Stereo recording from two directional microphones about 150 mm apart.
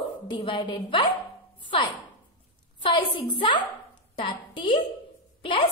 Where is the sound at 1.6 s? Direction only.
35° left (ahead or behind).